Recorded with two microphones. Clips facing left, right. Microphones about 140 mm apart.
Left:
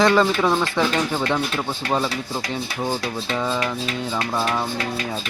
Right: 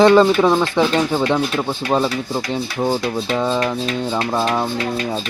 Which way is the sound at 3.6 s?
30° right (ahead or behind).